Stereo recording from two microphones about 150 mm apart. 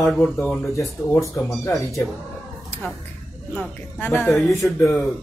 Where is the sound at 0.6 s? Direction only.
20° left (ahead or behind).